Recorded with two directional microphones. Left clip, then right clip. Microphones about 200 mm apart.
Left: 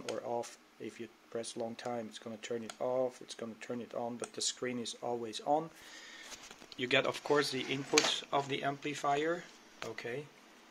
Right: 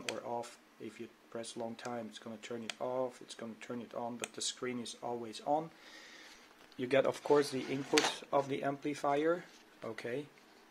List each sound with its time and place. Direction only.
0.1 s speech: 15° left (ahead or behind)
6.8 s speech: 10° right (ahead or behind)